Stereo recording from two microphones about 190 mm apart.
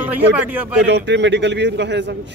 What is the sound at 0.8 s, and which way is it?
Speech, 65° right (ahead or behind).